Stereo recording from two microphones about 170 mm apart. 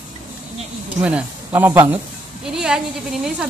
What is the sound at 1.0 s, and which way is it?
A woman's voice, 10° right (ahead or behind).